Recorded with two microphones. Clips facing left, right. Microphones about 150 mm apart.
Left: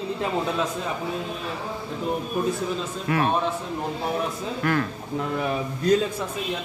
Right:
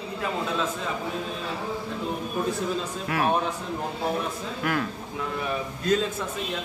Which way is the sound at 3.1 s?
5° right (ahead or behind).